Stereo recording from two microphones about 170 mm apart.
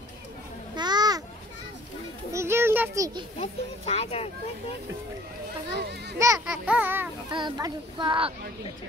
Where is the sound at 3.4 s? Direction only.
35° left (ahead or behind).